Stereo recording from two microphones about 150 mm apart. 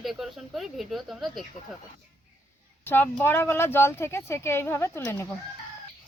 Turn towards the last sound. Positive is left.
turn(degrees=15)  # may be behind; listen again after turning